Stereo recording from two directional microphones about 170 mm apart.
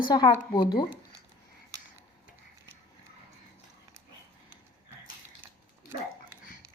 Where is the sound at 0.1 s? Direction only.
25° left (ahead or behind).